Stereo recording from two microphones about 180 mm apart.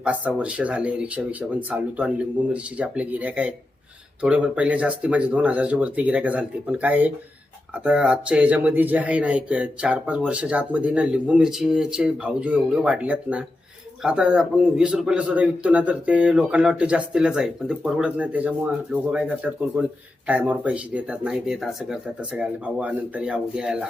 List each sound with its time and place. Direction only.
0.0 s a man's voice: 10° right (ahead or behind)